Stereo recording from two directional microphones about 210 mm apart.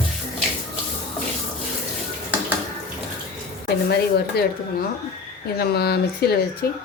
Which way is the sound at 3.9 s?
50° left (ahead or behind).